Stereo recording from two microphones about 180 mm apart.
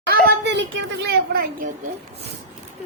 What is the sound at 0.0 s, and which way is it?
A child's voice, 60° right (ahead or behind).